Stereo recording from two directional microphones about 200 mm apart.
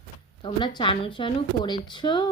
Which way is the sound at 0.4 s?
25° left (ahead or behind).